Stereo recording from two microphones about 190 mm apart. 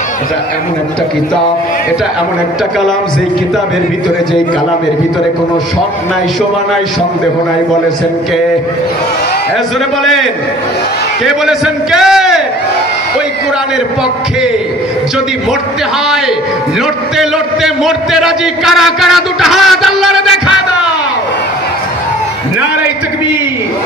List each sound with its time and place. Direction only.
11.2 s a man's voice: 5° right (ahead or behind)
17.2 s a man's voice: centre (ahead or behind)